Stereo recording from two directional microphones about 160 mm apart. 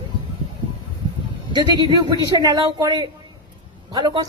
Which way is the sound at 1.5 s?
25° right (ahead or behind).